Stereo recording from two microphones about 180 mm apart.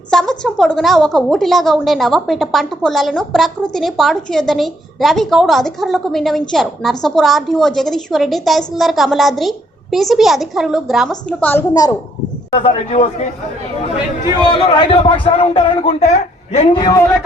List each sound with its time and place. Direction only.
0.1 s a woman's voice: 5° left (ahead or behind)
12.5 s speech: 35° left (ahead or behind)
14.6 s a man's voice: 25° left (ahead or behind)